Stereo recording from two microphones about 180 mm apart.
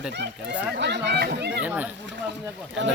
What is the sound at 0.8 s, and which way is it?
Speech, 70° right (ahead or behind).